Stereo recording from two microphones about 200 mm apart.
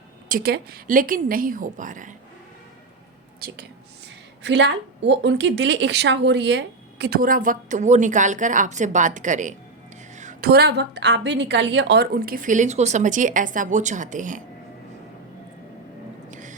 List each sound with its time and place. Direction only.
0.3 s a woman's voice: 45° right (ahead or behind)
3.4 s a woman's voice: 50° right (ahead or behind)
4.4 s a woman's voice: 65° right (ahead or behind); by 9.6 s 40° right (ahead or behind)
10.2 s a sound: 40° right (ahead or behind)
10.5 s a woman's voice: 55° right (ahead or behind); by 14.4 s 40° right (ahead or behind)
16.3 s a sound: 40° right (ahead or behind)